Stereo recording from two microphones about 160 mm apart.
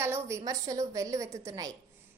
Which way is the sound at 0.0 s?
15° right (ahead or behind).